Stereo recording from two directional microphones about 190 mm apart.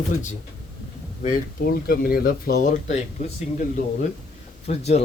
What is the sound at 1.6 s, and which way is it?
Speech, 55° left (ahead or behind).